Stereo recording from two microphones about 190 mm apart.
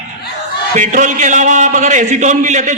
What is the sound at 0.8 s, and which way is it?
A man's voice, 45° right (ahead or behind).